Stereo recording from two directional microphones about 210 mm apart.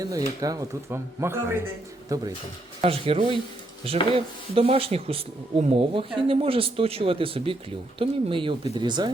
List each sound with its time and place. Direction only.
0.0 s speech: 15° right (ahead or behind)
2.8 s speech: 25° right (ahead or behind)